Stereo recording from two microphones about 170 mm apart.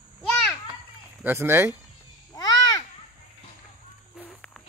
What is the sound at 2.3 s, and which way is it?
Babbling, 20° left (ahead or behind).